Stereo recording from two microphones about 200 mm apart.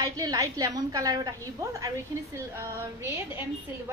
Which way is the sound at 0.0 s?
20° right (ahead or behind).